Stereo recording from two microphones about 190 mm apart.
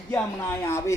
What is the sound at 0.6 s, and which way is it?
Speech, 15° left (ahead or behind).